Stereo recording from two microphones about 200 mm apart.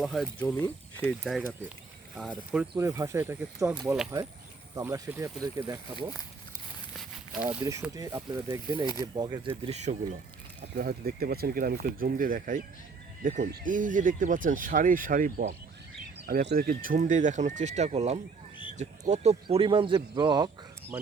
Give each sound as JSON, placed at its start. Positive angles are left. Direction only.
{"t": 0.0, "sound": "speech", "side_deg": 0}
{"t": 1.2, "sound": "speech", "side_deg": 0}
{"t": 2.5, "sound": "speech", "side_deg": -10}
{"t": 4.7, "sound": "speech", "side_deg": -15}
{"t": 6.9, "sound": "walk", "side_deg": -5}
{"t": 7.6, "sound": "speech", "side_deg": -15}
{"t": 9.6, "sound": "speech", "side_deg": -35}
{"t": 10.8, "sound": "speech", "side_deg": -50}